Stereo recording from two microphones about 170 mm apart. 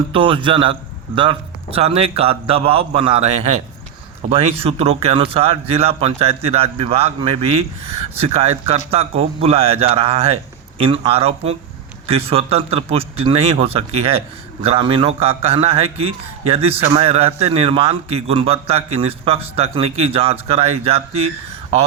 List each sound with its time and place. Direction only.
0.1 s a man's voice: 30° right (ahead or behind)